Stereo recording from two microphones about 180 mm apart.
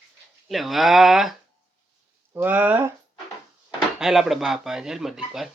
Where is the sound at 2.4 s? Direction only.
10° right (ahead or behind).